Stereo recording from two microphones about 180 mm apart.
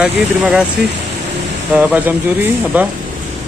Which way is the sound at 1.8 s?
10° right (ahead or behind).